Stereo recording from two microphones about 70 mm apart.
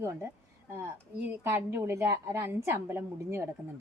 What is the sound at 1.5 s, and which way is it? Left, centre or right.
Speech, right.